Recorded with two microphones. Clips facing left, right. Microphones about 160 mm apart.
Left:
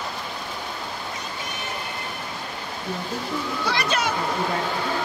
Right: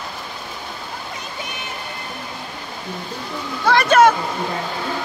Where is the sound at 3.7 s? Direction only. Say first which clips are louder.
Right 13 dB; 50° right (ahead or behind).